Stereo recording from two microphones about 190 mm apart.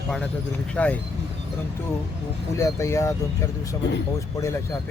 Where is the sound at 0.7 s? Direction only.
5° left (ahead or behind).